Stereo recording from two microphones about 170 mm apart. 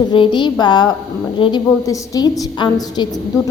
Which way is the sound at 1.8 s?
20° left (ahead or behind).